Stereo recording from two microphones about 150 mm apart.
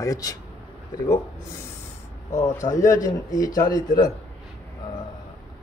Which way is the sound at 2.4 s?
55° left (ahead or behind).